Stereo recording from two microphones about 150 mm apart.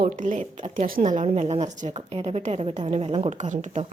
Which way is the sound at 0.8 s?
65° right (ahead or behind).